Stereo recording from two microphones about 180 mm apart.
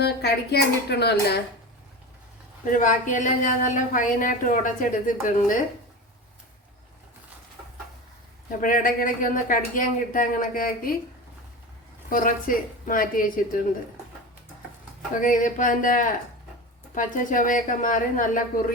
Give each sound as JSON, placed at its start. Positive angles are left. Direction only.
{"t": 0.0, "sound": "speech", "side_deg": 65}
{"t": 2.6, "sound": "speech", "side_deg": 45}
{"t": 8.6, "sound": "speech", "side_deg": 50}
{"t": 12.0, "sound": "speech", "side_deg": 50}
{"t": 15.2, "sound": "speech", "side_deg": 45}